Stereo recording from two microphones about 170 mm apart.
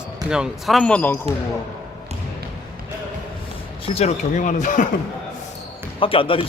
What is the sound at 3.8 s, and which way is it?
Speech, 40° left (ahead or behind).